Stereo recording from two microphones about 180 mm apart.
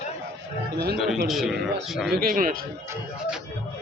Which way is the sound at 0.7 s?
65° right (ahead or behind).